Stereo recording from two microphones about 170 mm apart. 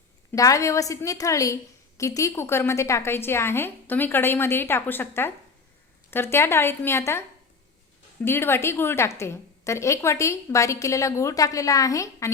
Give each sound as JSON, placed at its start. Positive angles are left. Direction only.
{"t": 0.3, "sound": "a woman's voice", "side_deg": 20}